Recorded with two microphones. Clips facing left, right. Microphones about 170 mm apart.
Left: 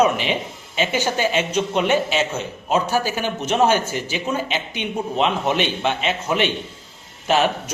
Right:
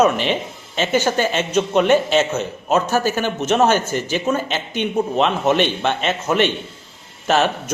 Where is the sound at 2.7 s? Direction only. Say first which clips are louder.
Right 3 dB; 10° left (ahead or behind).